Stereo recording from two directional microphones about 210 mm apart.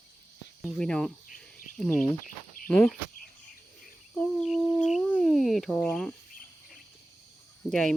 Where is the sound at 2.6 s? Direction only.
Centre (ahead or behind).